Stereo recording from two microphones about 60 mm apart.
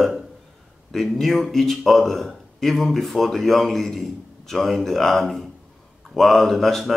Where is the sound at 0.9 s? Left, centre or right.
Centre.